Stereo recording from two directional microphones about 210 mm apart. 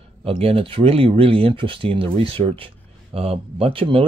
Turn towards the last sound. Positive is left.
turn(degrees=-25)  # may be behind; listen again after turning